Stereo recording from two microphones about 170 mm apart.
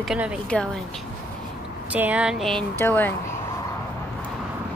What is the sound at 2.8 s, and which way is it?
Speech, 10° left (ahead or behind).